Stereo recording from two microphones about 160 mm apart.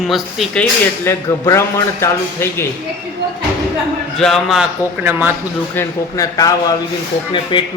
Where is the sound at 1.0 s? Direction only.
15° left (ahead or behind).